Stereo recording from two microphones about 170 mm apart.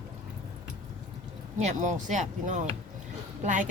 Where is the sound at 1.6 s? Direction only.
45° right (ahead or behind).